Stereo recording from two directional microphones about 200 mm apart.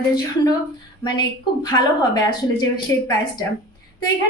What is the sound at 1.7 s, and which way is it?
A woman's voice, 20° left (ahead or behind).